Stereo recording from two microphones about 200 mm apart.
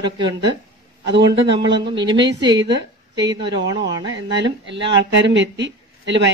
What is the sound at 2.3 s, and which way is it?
A woman's voice, 60° right (ahead or behind).